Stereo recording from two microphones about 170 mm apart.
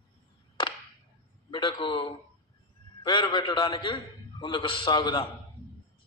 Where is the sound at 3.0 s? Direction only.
30° left (ahead or behind).